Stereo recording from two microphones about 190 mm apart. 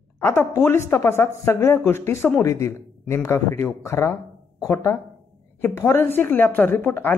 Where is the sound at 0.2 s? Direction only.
10° left (ahead or behind).